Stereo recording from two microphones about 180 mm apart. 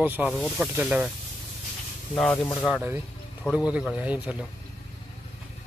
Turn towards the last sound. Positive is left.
turn(degrees=-5)  # may be behind; listen again after turning